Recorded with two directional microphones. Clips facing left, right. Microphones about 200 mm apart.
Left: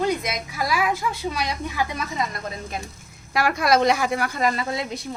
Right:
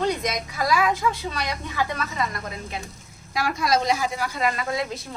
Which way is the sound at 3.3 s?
65° left (ahead or behind).